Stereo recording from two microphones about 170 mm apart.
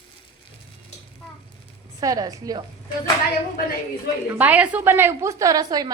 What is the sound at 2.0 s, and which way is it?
Speech, 20° right (ahead or behind).